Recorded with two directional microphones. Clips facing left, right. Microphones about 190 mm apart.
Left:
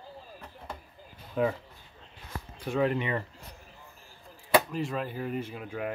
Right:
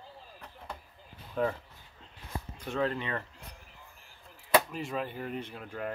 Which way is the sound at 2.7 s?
15° left (ahead or behind).